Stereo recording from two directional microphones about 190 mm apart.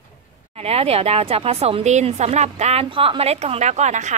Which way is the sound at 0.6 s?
30° right (ahead or behind).